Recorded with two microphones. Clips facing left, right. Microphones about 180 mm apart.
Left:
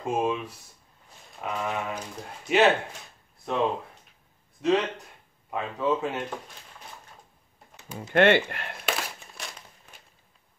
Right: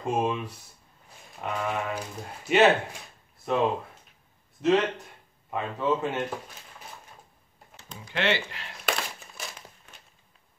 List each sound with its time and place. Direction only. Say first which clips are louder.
0.0 s speech: even; centre (ahead or behind)
8.1 s speech: left 8 dB; 55° left (ahead or behind)
8.8 s crumpling: right 2 dB; centre (ahead or behind)